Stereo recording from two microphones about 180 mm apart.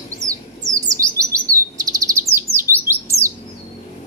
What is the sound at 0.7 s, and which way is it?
Chirp, 20° right (ahead or behind).